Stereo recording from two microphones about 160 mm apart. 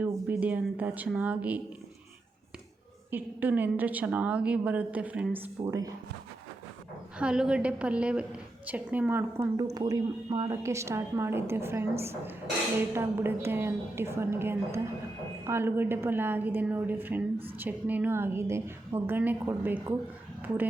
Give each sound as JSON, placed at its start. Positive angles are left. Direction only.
{"t": 0.0, "sound": "a woman's voice", "side_deg": -10}
{"t": 3.1, "sound": "a woman's voice", "side_deg": -10}
{"t": 7.2, "sound": "a woman's voice", "side_deg": -5}
{"t": 9.7, "sound": "a woman's voice", "side_deg": -25}